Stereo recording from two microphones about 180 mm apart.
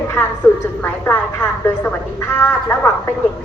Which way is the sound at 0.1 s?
15° left (ahead or behind).